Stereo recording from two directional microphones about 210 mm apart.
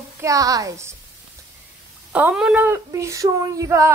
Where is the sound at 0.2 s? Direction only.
15° right (ahead or behind).